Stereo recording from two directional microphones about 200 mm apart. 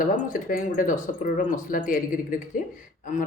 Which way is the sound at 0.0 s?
45° left (ahead or behind).